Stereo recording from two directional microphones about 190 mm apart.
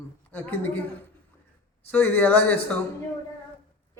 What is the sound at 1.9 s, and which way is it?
Speech, 10° left (ahead or behind).